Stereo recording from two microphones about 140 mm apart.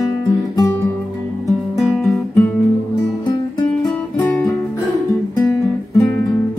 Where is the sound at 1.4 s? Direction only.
Centre (ahead or behind).